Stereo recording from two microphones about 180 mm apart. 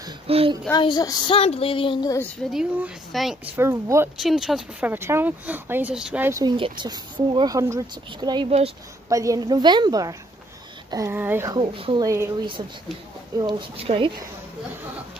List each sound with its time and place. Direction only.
0.0 s a sound: 30° right (ahead or behind)
0.7 s speech: 25° left (ahead or behind)
2.5 s speech: centre (ahead or behind)
3.5 s speech: 15° right (ahead or behind)
4.2 s speech: centre (ahead or behind)
6.4 s speech: 25° right (ahead or behind)
9.1 s speech: 20° right (ahead or behind)
11.5 s speech: 30° right (ahead or behind)
13.4 s speech: 25° right (ahead or behind)